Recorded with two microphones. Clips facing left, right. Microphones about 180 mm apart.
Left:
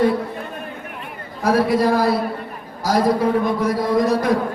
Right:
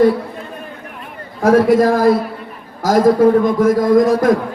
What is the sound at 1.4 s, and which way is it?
Speech, 45° right (ahead or behind).